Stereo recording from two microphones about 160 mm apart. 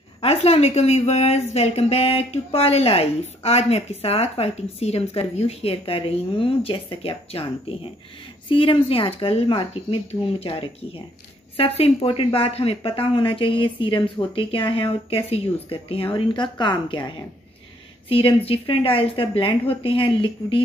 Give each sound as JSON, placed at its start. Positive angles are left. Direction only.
{"t": 0.2, "sound": "a woman's voice", "side_deg": 40}
{"t": 8.5, "sound": "a woman's voice", "side_deg": 35}
{"t": 18.0, "sound": "a woman's voice", "side_deg": 35}